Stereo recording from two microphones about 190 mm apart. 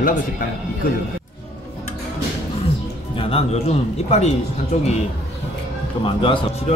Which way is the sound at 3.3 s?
35° left (ahead or behind).